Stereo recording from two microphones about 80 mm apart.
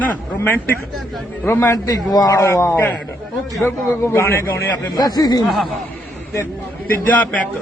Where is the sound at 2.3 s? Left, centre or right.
Left.